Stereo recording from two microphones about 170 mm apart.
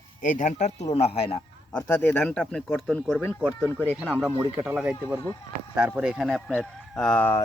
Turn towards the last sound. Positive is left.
turn(degrees=10)  # may be behind; listen again after turning